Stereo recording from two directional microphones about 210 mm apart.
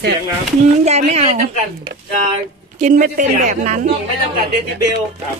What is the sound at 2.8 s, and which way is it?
Speech, 35° right (ahead or behind).